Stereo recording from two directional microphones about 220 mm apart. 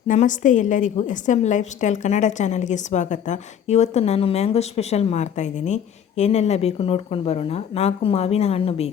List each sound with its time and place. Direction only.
0.1 s a woman's voice: 35° left (ahead or behind)